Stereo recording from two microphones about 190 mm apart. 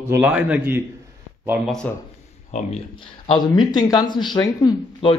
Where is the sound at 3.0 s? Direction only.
25° left (ahead or behind).